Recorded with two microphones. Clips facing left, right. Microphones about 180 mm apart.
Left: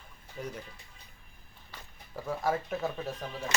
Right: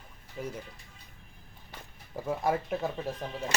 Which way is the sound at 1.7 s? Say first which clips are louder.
Right 3 dB; 20° right (ahead or behind).